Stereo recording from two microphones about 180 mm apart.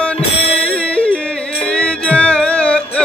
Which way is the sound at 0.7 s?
5° left (ahead or behind).